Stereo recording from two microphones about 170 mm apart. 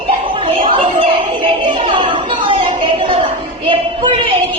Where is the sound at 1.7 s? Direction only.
30° right (ahead or behind).